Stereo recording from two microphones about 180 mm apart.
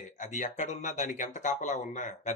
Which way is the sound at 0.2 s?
45° left (ahead or behind).